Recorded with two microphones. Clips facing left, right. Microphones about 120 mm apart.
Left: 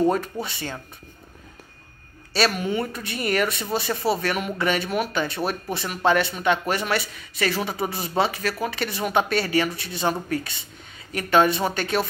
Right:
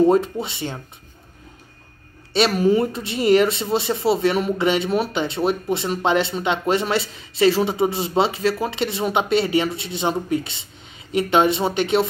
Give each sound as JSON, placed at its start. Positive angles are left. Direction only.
{"t": 0.1, "sound": "speech", "side_deg": -25}
{"t": 2.5, "sound": "speech", "side_deg": -35}